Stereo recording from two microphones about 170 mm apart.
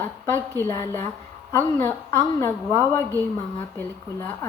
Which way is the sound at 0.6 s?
15° left (ahead or behind).